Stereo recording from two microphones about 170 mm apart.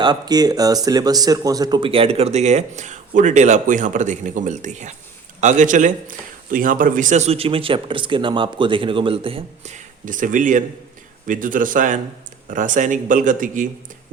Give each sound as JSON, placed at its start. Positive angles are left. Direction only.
{"t": 0.0, "sound": "a man's voice", "side_deg": -25}